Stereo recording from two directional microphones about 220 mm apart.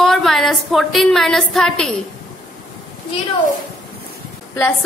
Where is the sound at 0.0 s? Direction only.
Centre (ahead or behind).